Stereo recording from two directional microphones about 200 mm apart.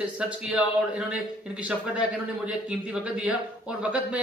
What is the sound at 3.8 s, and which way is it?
Speech, 5° right (ahead or behind).